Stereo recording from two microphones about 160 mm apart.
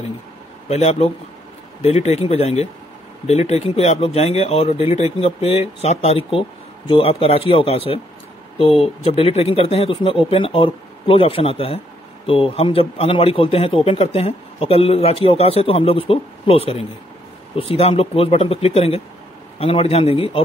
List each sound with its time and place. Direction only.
0.7 s speech: 40° left (ahead or behind)